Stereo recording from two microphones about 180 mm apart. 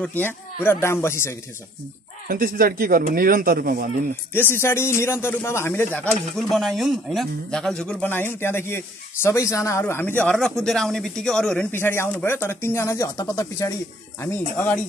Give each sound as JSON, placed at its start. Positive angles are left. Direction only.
{"t": 0.0, "sound": "speech", "side_deg": 10}
{"t": 2.2, "sound": "speech", "side_deg": -55}
{"t": 4.3, "sound": "speech", "side_deg": 10}
{"t": 6.0, "sound": "speech", "side_deg": 0}